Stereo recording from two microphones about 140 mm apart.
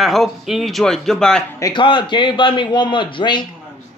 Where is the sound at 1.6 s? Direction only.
35° left (ahead or behind).